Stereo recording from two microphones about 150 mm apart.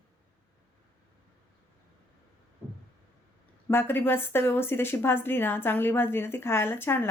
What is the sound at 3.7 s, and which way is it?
A woman's voice, 15° left (ahead or behind).